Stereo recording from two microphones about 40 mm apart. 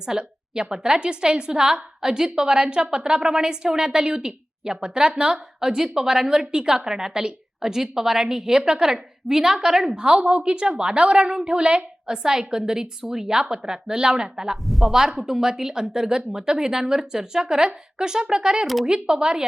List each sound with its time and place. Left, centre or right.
0.0 s a woman's voice: centre
14.5 s a woman's voice: centre